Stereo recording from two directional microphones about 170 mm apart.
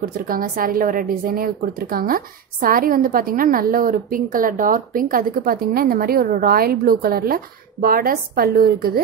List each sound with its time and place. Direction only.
0.0 s a woman's voice: 55° right (ahead or behind)